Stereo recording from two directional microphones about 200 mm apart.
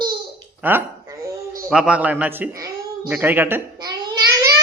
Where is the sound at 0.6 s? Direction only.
10° right (ahead or behind).